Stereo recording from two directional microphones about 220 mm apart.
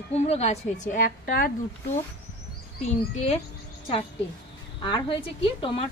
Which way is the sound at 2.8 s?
30° left (ahead or behind).